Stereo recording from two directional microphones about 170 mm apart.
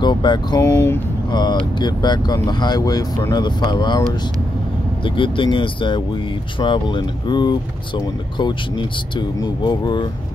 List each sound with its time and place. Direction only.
0.0 s speech: 25° left (ahead or behind)
1.3 s speech: 25° left (ahead or behind)
5.0 s speech: 30° left (ahead or behind)